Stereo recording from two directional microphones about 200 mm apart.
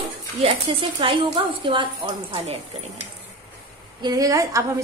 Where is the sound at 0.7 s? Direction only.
25° right (ahead or behind).